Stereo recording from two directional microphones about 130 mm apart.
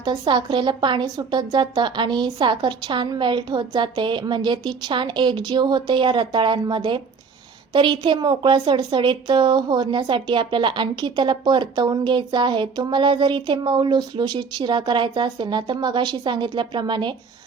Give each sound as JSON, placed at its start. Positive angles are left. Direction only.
{"t": 0.0, "sound": "a woman's voice", "side_deg": -35}